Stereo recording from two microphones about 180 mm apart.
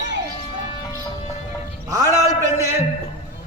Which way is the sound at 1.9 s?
20° right (ahead or behind).